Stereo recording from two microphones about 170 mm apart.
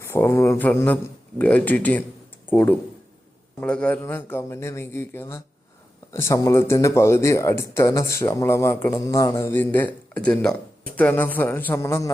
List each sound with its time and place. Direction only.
0.0 s speech: 15° left (ahead or behind)